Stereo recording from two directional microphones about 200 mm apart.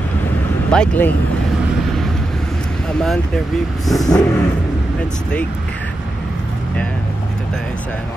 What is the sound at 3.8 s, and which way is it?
Vehicle, centre (ahead or behind).